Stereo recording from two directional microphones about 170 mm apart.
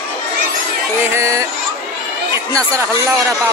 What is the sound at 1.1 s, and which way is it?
Speech, 20° right (ahead or behind).